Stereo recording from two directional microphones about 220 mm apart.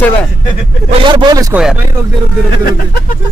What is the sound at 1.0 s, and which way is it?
Speech, 20° right (ahead or behind).